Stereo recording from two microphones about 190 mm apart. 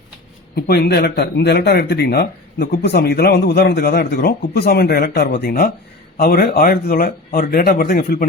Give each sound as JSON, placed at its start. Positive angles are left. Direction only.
{"t": 0.5, "sound": "speech", "side_deg": 55}